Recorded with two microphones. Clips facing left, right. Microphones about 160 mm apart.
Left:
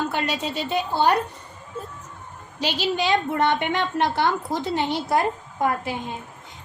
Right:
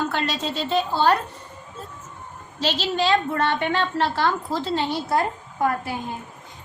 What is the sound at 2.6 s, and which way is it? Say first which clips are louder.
A woman's voice: right 1 dB; 15° left (ahead or behind).